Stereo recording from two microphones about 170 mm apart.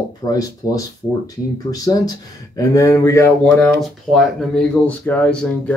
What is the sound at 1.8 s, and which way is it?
Speech, 20° left (ahead or behind).